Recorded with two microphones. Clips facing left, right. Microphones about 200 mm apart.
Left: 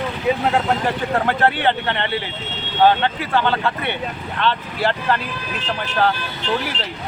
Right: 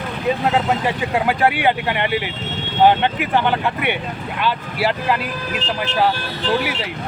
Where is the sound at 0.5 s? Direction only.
5° right (ahead or behind).